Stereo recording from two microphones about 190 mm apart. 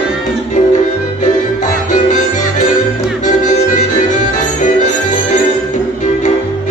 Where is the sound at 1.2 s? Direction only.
40° left (ahead or behind).